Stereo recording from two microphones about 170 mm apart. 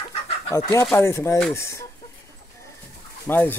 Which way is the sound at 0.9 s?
15° left (ahead or behind).